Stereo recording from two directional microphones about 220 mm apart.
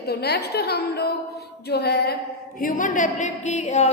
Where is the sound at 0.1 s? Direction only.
45° left (ahead or behind).